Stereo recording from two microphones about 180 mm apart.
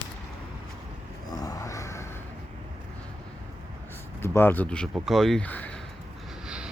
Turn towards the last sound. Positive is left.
turn(degrees=10)  # may be behind; listen again after turning